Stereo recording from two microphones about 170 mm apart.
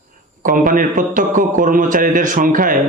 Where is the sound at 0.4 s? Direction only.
50° right (ahead or behind).